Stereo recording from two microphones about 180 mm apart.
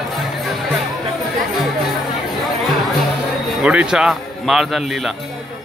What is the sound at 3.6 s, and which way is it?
Speech, 5° right (ahead or behind).